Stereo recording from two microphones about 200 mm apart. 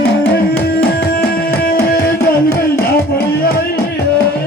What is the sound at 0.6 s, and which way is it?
Music, 50° left (ahead or behind).